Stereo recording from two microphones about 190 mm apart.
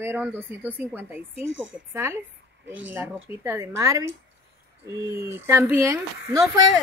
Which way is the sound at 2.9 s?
15° right (ahead or behind).